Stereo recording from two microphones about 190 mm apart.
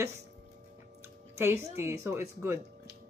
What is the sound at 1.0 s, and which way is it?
Speech, 15° right (ahead or behind).